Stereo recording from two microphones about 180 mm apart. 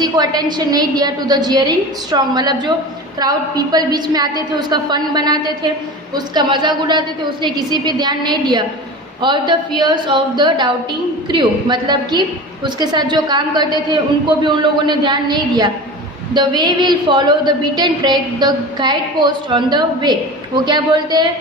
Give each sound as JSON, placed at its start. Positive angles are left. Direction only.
{"t": 0.0, "sound": "a woman's voice", "side_deg": -20}